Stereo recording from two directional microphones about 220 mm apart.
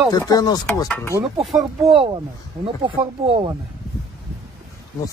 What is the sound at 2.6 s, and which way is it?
Speech, 25° right (ahead or behind).